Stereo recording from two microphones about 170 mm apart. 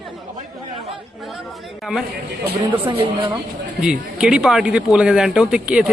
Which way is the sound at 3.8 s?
5° right (ahead or behind).